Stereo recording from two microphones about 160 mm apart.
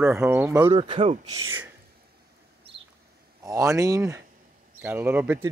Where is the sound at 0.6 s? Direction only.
35° right (ahead or behind).